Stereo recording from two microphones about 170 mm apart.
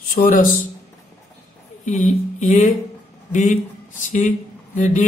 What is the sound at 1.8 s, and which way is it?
Speech, 45° left (ahead or behind).